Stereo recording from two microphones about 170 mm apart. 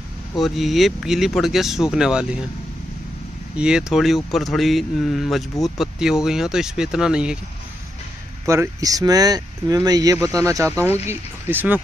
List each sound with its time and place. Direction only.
0.4 s speech: centre (ahead or behind)
3.5 s speech: 5° right (ahead or behind)
8.5 s speech: 20° right (ahead or behind)